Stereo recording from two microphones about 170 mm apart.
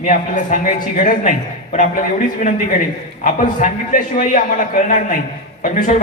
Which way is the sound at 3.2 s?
50° left (ahead or behind).